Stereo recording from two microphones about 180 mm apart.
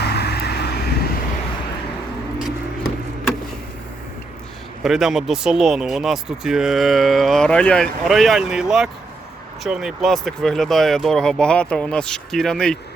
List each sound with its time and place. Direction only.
0.0 s vehicle: 65° left (ahead or behind)
4.8 s speech: centre (ahead or behind)